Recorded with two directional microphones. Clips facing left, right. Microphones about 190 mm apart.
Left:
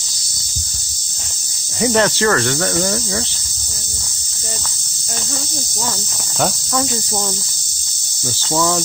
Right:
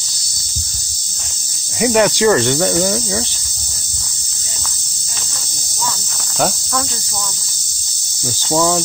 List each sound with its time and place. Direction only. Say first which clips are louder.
1.8 s speech: right 2 dB; 10° right (ahead or behind)
8.5 s speech: right 2 dB; 15° right (ahead or behind)